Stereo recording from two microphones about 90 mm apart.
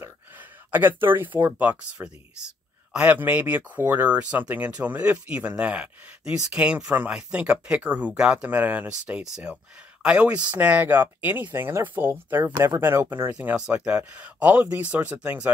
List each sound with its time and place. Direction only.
0.0 s speech: 20° right (ahead or behind)